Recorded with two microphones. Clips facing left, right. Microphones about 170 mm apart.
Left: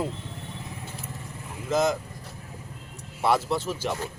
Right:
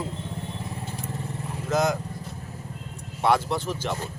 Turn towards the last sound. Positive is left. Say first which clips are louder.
# even
turn(degrees=5)  # may be behind; listen again after turning